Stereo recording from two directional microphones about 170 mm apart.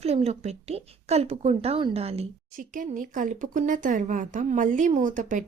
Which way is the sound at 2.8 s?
50° right (ahead or behind).